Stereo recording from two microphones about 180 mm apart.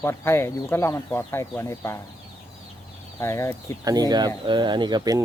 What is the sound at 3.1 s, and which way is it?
Speech, 15° left (ahead or behind).